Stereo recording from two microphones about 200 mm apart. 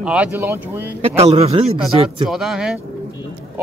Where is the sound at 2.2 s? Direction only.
Centre (ahead or behind).